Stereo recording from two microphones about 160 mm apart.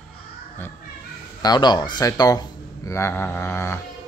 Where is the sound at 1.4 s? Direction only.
25° left (ahead or behind).